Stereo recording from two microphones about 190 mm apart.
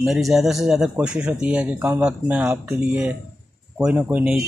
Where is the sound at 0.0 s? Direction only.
Centre (ahead or behind).